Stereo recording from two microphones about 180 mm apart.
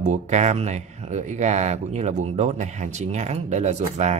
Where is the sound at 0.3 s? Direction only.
40° right (ahead or behind).